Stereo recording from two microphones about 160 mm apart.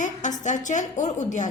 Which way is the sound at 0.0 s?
50° left (ahead or behind).